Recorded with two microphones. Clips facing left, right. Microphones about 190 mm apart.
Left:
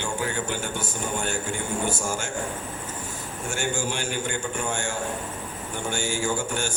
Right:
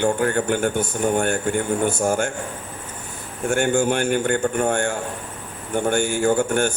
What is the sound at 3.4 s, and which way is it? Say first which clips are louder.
A man's voice: right 10 dB; 60° right (ahead or behind).